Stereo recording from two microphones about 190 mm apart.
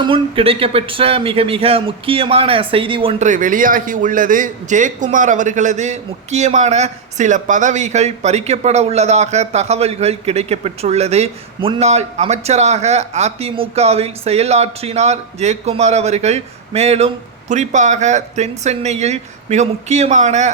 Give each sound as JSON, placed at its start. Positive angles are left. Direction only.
{"t": 0.0, "sound": "speech", "side_deg": -30}